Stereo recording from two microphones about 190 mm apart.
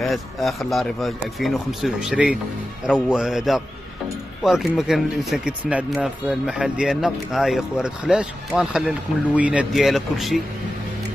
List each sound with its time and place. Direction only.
0.0 s speech: centre (ahead or behind)